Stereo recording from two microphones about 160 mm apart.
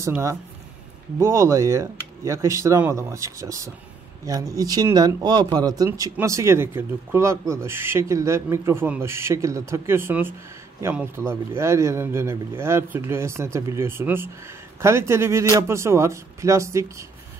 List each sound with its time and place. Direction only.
0.0 s speech: 20° right (ahead or behind)